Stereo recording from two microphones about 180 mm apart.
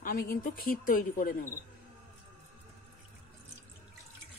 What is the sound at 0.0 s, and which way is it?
Speech, 55° left (ahead or behind).